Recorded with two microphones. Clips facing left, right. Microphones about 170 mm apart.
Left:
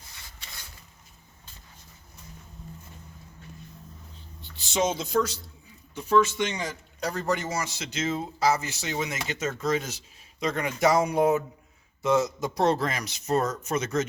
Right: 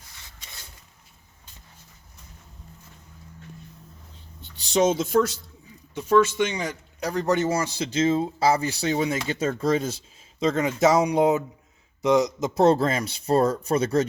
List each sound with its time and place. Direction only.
4.8 s speech: 50° right (ahead or behind)
6.3 s a man's voice: 15° right (ahead or behind)
7.3 s speech: 30° right (ahead or behind)